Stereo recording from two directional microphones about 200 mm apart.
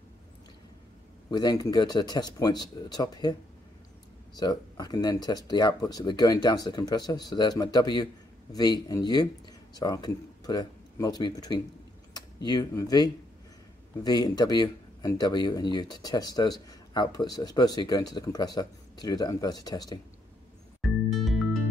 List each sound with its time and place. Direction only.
1.3 s speech: 20° left (ahead or behind)
4.4 s speech: 20° left (ahead or behind)
20.8 s music: centre (ahead or behind)